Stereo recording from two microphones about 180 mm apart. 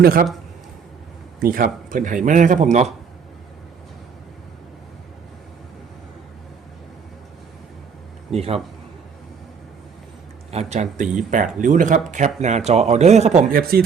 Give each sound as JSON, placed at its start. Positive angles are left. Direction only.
{"t": 0.0, "sound": "speech", "side_deg": -55}
{"t": 1.4, "sound": "speech", "side_deg": -50}
{"t": 8.3, "sound": "a man's voice", "side_deg": -35}
{"t": 10.5, "sound": "a man's voice", "side_deg": -40}
{"t": 13.5, "sound": "speech", "side_deg": -55}